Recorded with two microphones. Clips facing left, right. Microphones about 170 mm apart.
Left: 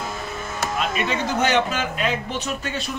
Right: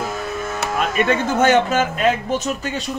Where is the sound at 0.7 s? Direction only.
55° right (ahead or behind).